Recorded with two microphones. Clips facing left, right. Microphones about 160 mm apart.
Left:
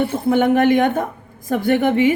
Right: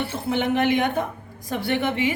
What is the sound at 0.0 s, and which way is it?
A woman's voice, 50° left (ahead or behind).